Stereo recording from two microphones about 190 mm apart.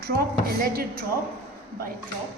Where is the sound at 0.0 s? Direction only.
50° right (ahead or behind).